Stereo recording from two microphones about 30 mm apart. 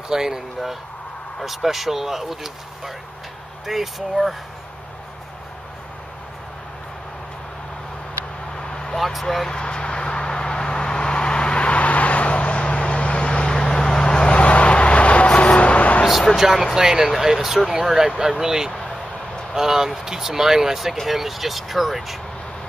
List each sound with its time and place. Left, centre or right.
0.1 s speech: centre
1.4 s speech: centre
8.6 s vehicle: left
8.9 s speech: centre
9.5 s vehicle: left
14.3 s a sound: left
16.3 s speech: centre